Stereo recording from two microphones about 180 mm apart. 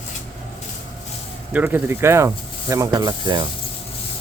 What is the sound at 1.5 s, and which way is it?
Speech, 10° right (ahead or behind).